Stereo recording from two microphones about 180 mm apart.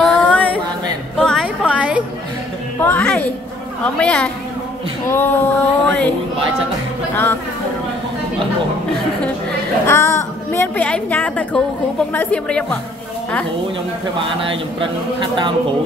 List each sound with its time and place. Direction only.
0.0 s a sound: 5° left (ahead or behind)
1.1 s music: centre (ahead or behind)
2.8 s a woman's voice: 10° left (ahead or behind)
9.8 s a woman's voice: 15° left (ahead or behind)
14.5 s speech: 25° right (ahead or behind)